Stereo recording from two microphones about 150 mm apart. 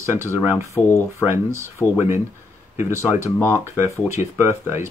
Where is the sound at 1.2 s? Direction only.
15° right (ahead or behind).